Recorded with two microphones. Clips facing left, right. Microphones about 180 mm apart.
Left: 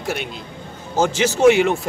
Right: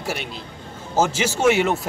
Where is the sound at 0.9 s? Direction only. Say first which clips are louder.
Left 2 dB; 5° right (ahead or behind).